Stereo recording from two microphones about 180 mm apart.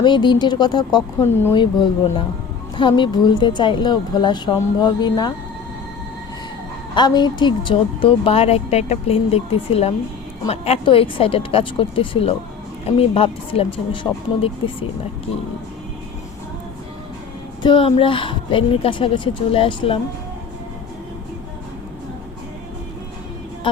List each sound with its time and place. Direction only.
0.0 s a woman's voice: 25° left (ahead or behind)
6.9 s speech: 25° left (ahead or behind)
17.6 s a woman's voice: 30° left (ahead or behind)